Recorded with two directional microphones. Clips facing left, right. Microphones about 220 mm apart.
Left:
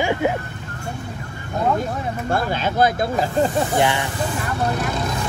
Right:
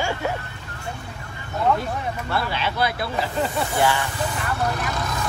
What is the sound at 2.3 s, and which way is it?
Speech, 45° left (ahead or behind).